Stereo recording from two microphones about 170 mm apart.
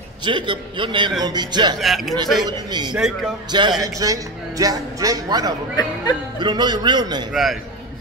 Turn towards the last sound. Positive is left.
turn(degrees=0)  # may be behind; listen again after turning